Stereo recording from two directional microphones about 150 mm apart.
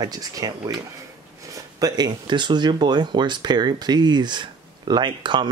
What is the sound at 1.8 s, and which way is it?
Speech, 25° right (ahead or behind).